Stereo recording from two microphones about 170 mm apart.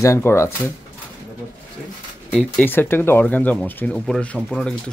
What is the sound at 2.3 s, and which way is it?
Speech, 5° left (ahead or behind).